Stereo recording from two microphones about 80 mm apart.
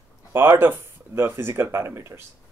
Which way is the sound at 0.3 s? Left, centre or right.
Right.